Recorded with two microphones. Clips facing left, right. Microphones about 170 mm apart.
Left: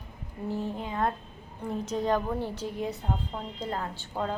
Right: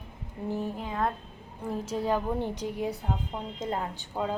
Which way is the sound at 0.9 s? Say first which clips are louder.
Left 1 dB; centre (ahead or behind).